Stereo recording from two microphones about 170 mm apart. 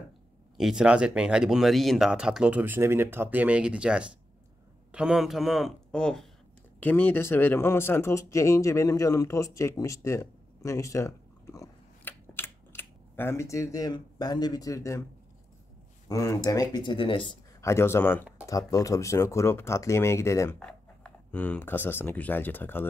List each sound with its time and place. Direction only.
0.6 s speech: 5° right (ahead or behind); by 15.0 s 20° left (ahead or behind)
16.1 s speech: 20° left (ahead or behind)
17.6 s speech: 15° left (ahead or behind)
20.5 s speech: 5° left (ahead or behind)